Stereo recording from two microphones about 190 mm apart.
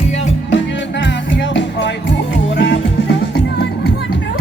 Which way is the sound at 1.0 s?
70° left (ahead or behind).